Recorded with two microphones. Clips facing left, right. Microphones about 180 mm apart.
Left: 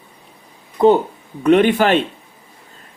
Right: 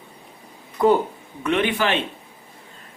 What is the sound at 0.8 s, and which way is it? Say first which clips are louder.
Speech: left 5 dB; 25° left (ahead or behind).